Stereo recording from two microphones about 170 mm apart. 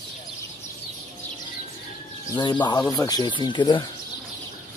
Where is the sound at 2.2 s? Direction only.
25° left (ahead or behind).